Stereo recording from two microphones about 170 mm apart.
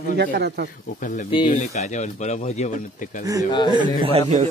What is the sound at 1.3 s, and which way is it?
Speech, 30° left (ahead or behind).